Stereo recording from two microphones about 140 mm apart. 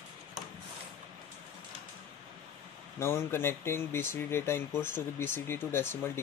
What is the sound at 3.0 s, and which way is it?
Speech, 15° left (ahead or behind).